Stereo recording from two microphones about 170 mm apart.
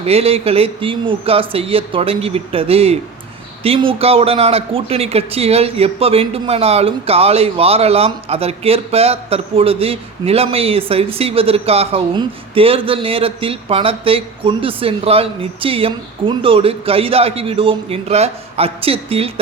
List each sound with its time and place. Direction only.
0.0 s a man's voice: 35° right (ahead or behind)